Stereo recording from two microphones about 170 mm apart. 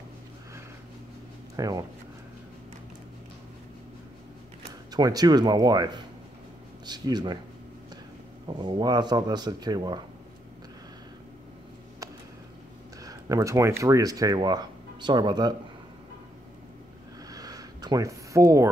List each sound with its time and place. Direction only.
1.6 s speech: 20° right (ahead or behind)
4.9 s speech: 20° right (ahead or behind)
8.5 s speech: 25° right (ahead or behind)
13.0 s speech: 20° right (ahead or behind)
17.3 s a sound: 20° right (ahead or behind)